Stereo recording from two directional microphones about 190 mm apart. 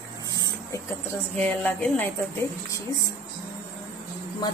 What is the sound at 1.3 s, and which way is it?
Speech, 5° left (ahead or behind).